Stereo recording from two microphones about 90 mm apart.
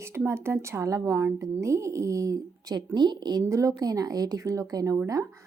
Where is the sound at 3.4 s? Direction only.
35° right (ahead or behind).